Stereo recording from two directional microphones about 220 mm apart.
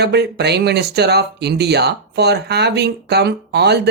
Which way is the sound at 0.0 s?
50° right (ahead or behind).